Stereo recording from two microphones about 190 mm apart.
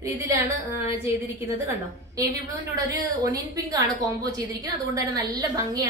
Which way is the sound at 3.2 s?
20° right (ahead or behind).